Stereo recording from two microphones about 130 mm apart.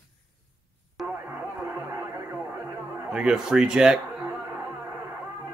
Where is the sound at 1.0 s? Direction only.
15° right (ahead or behind).